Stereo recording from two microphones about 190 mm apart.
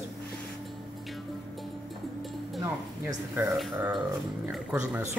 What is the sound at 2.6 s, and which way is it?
Speech, 15° right (ahead or behind).